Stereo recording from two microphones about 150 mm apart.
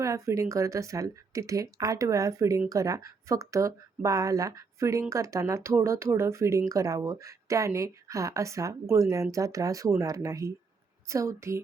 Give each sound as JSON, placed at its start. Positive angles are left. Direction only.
{"t": 0.0, "sound": "speech", "side_deg": -20}